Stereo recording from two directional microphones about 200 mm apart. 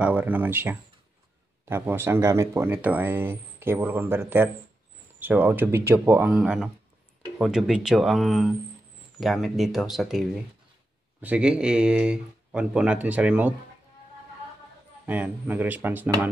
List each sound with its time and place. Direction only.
0.0 s speech: 10° right (ahead or behind)
15.0 s speech: 10° right (ahead or behind)